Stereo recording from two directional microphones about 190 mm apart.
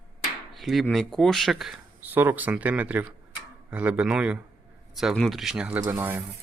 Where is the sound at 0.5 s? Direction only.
Centre (ahead or behind).